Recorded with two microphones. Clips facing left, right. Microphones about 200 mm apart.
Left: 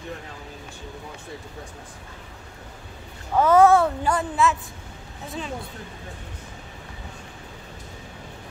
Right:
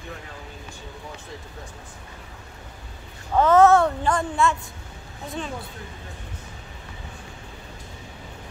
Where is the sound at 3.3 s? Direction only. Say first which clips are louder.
Even; 10° left (ahead or behind).